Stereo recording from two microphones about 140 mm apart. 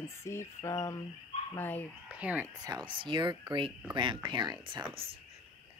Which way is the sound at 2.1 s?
10° right (ahead or behind).